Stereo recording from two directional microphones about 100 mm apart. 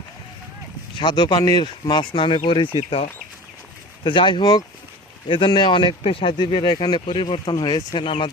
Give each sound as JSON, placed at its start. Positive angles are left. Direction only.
{"t": 0.9, "sound": "speech", "side_deg": 45}
{"t": 2.7, "sound": "speech", "side_deg": 75}
{"t": 4.0, "sound": "speech", "side_deg": 55}